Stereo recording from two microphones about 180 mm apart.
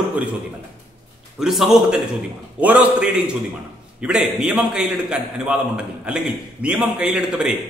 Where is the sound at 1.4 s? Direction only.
Centre (ahead or behind).